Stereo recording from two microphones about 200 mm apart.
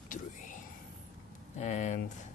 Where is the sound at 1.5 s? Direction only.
35° left (ahead or behind).